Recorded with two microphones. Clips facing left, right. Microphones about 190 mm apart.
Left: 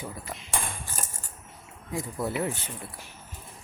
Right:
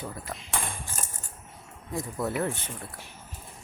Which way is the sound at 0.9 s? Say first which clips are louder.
Even; 25° right (ahead or behind).